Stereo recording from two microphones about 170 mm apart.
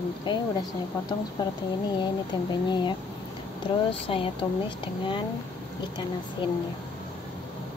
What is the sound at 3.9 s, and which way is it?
Speech, 30° left (ahead or behind).